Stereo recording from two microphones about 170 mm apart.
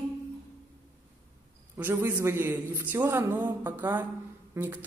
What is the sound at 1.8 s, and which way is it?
A man's voice, 10° right (ahead or behind).